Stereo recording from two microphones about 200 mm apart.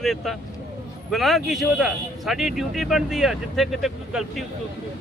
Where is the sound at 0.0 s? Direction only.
Centre (ahead or behind).